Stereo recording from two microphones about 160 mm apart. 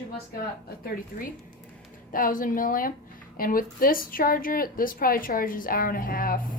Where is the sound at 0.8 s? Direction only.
60° left (ahead or behind).